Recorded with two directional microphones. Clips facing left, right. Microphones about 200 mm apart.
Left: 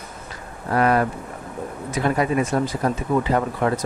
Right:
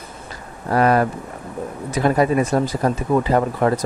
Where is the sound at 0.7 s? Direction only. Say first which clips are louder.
Right 2 dB; 35° right (ahead or behind).